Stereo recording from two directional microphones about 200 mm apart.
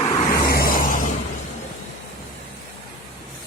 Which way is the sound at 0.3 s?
50° left (ahead or behind).